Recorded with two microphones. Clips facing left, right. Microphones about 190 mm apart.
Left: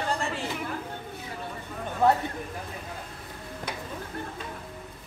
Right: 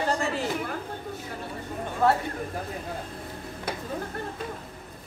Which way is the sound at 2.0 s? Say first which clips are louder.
Left 1 dB; 20° left (ahead or behind).